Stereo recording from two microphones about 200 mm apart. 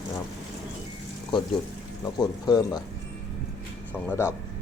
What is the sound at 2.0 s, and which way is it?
Speech, 20° left (ahead or behind).